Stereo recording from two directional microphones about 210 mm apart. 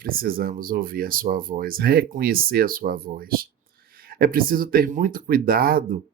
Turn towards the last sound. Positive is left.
turn(degrees=-45)  # may be behind; listen again after turning